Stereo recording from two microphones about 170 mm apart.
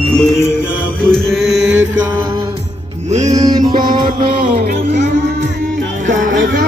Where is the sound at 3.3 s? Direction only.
25° right (ahead or behind).